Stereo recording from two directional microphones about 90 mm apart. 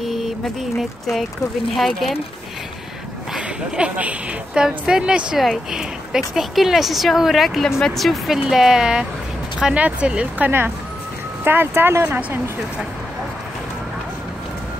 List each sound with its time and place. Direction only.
0.0 s mantra: centre (ahead or behind)
1.8 s a woman's voice: centre (ahead or behind)
3.3 s a woman's voice: 10° right (ahead or behind)
11.4 s speech: 25° right (ahead or behind)